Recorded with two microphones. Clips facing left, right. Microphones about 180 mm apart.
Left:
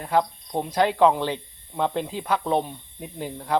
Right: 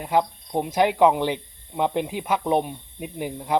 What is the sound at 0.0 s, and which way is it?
Speech, 15° right (ahead or behind).